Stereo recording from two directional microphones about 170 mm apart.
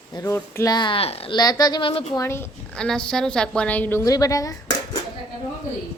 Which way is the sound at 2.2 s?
15° left (ahead or behind).